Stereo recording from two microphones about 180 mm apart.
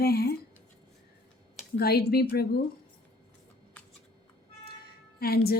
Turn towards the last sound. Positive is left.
turn(degrees=60)  # may be behind; listen again after turning